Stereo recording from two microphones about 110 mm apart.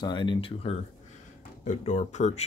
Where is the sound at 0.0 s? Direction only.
45° left (ahead or behind).